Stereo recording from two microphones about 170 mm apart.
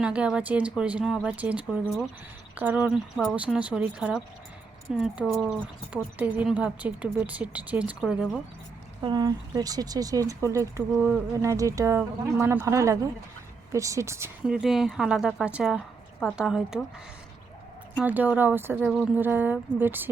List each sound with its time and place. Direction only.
0.0 s speech: 5° right (ahead or behind)
9.0 s speech: 25° right (ahead or behind)
14.4 s speech: 5° right (ahead or behind)
18.0 s speech: 10° right (ahead or behind)